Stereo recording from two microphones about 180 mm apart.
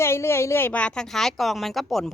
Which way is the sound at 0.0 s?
15° left (ahead or behind).